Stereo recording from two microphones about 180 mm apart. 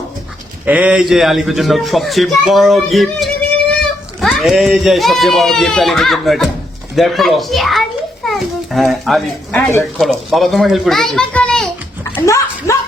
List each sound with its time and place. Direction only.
0.6 s a man's voice: 10° right (ahead or behind)
9.6 s speech: 15° left (ahead or behind)
10.0 s a man's voice: centre (ahead or behind)
12.1 s speech: 15° left (ahead or behind)